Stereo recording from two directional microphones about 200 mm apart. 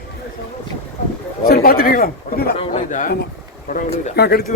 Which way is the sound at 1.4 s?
50° left (ahead or behind).